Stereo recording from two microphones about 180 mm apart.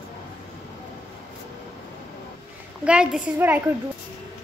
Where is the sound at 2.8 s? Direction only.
5° right (ahead or behind).